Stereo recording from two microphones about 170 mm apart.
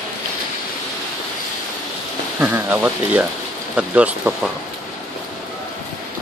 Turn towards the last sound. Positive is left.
turn(degrees=-10)  # may be behind; listen again after turning